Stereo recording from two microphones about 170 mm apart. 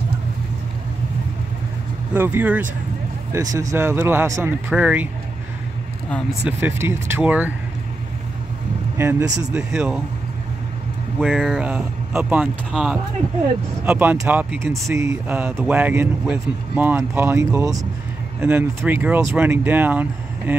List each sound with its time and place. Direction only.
2.1 s speech: 10° right (ahead or behind)
6.4 s speech: 15° right (ahead or behind)
8.9 s speech: 20° right (ahead or behind)
9.5 s speech: 5° right (ahead or behind)
11.1 s speech: centre (ahead or behind)
11.6 s speech: 10° right (ahead or behind)